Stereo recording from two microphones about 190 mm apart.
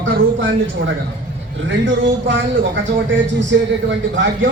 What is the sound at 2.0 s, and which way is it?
Speech, 75° right (ahead or behind).